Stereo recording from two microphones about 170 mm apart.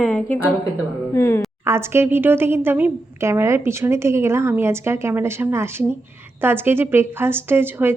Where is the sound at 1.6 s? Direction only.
15° right (ahead or behind).